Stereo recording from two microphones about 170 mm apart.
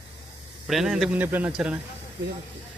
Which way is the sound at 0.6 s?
Centre (ahead or behind).